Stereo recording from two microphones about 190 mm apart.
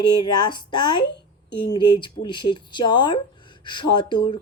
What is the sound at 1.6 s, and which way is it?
A woman's voice, 25° left (ahead or behind).